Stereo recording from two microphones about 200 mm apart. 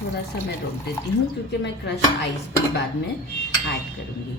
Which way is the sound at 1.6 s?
60° left (ahead or behind).